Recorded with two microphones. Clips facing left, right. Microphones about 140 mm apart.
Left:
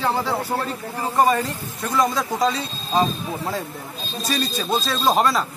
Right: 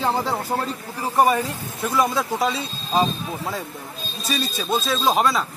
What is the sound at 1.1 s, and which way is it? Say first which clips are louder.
Speech: even; 10° right (ahead or behind).